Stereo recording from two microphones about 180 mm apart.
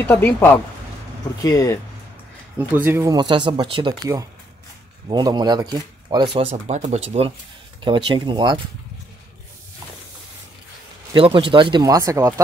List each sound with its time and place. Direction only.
0.0 s a woman's voice: 10° left (ahead or behind)
2.7 s speech: 10° right (ahead or behind)
11.1 s speech: 30° right (ahead or behind)